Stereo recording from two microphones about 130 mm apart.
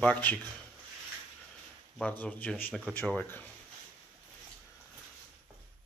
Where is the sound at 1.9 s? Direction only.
10° left (ahead or behind).